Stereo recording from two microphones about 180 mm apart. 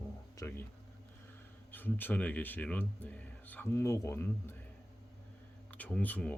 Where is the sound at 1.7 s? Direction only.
10° left (ahead or behind).